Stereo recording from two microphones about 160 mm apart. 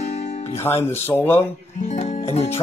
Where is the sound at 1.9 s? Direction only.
45° left (ahead or behind).